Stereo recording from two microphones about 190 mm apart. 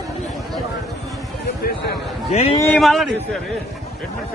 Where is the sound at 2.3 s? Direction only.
35° left (ahead or behind).